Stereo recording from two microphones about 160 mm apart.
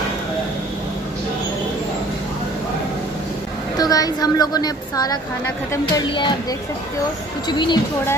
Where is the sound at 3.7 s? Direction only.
25° left (ahead or behind).